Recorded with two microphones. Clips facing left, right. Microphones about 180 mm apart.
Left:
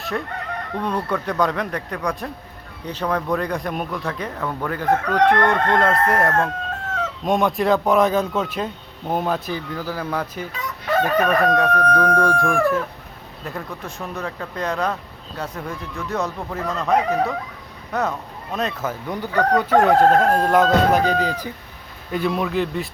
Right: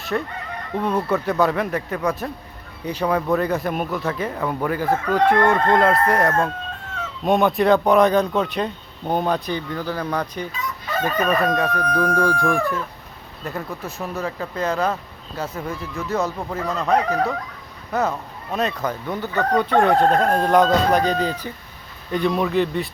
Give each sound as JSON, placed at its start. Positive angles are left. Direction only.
{"t": 0.8, "sound": "speech", "side_deg": -5}
{"t": 10.5, "sound": "chicken", "side_deg": 65}
{"t": 11.4, "sound": "speech", "side_deg": 0}
{"t": 11.7, "sound": "speech", "side_deg": 60}
{"t": 12.4, "sound": "speech", "side_deg": 0}